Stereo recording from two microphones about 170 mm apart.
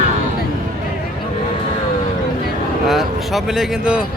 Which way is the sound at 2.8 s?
Centre (ahead or behind).